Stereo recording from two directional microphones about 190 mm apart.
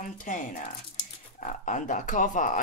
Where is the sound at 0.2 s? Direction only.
40° left (ahead or behind).